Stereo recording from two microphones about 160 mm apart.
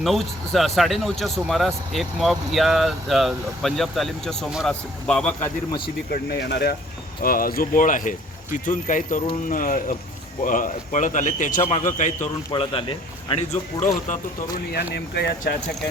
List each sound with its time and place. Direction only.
0.0 s speech: centre (ahead or behind)
6.1 s speech: 85° left
7.2 s speech: 65° left (ahead or behind)
12.5 s speech: 30° left (ahead or behind)
13.5 s speech: 45° left (ahead or behind)
14.5 s speech: 85° left